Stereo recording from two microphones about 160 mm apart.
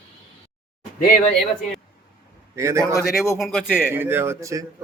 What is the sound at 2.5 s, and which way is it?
Speech, 20° right (ahead or behind).